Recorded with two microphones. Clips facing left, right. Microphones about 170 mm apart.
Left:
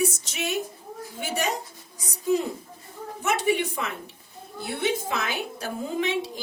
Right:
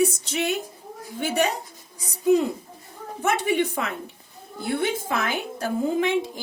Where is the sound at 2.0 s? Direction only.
60° right (ahead or behind).